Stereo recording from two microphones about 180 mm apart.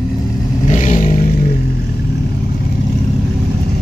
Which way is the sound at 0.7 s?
40° left (ahead or behind).